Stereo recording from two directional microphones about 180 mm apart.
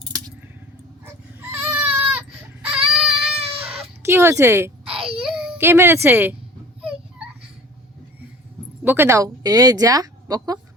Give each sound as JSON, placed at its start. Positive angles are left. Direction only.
{"t": 1.4, "sound": "baby cry", "side_deg": -10}
{"t": 4.9, "sound": "baby cry", "side_deg": -30}
{"t": 5.2, "sound": "a child's voice", "side_deg": -10}
{"t": 8.8, "sound": "a woman's voice", "side_deg": -10}